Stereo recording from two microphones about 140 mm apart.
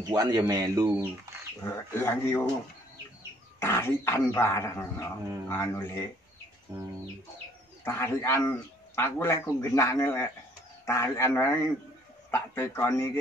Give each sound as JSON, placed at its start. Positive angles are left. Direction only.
{"t": 0.1, "sound": "speech", "side_deg": -25}
{"t": 1.6, "sound": "speech", "side_deg": 15}
{"t": 3.6, "sound": "speech", "side_deg": 20}
{"t": 7.8, "sound": "a man's voice", "side_deg": 15}